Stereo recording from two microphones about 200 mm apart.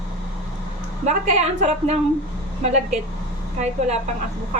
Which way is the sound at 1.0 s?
35° right (ahead or behind).